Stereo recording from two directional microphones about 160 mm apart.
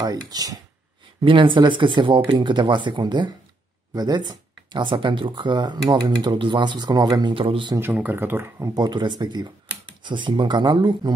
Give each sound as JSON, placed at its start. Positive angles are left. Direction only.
{"t": 0.0, "sound": "speech", "side_deg": -25}
{"t": 7.7, "sound": "speech", "side_deg": -10}